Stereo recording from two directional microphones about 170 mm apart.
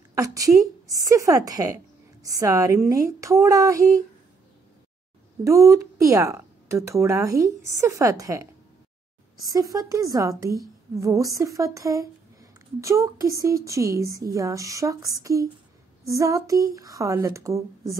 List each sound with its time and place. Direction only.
0.1 s a woman's voice: 20° right (ahead or behind)
5.4 s speech: 20° right (ahead or behind)